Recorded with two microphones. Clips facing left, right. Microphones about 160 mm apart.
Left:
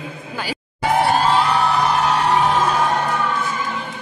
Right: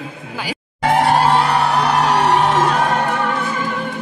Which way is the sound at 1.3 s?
70° right (ahead or behind).